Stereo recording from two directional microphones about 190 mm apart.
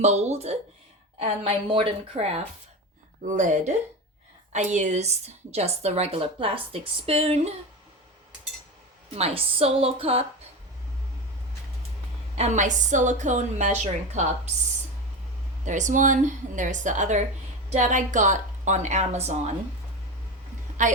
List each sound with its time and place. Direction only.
0.0 s a woman's voice: 35° right (ahead or behind)
3.2 s a woman's voice: 40° right (ahead or behind)
9.1 s a woman's voice: 30° right (ahead or behind)
12.4 s a woman's voice: 40° right (ahead or behind)
15.6 s a woman's voice: 40° right (ahead or behind)
20.8 s a woman's voice: 40° right (ahead or behind)